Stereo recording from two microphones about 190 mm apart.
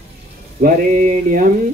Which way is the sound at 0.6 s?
45° right (ahead or behind).